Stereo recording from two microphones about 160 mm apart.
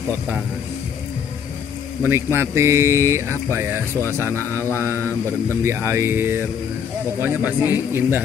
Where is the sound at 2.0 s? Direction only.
15° right (ahead or behind).